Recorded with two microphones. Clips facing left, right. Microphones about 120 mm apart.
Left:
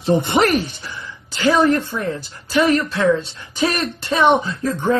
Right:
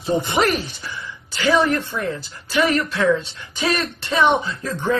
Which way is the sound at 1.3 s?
40° left (ahead or behind).